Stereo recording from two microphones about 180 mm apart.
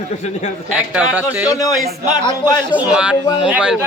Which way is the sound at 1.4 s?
20° left (ahead or behind).